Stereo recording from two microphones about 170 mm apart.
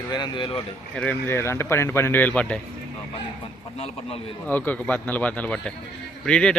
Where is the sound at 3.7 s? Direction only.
35° left (ahead or behind).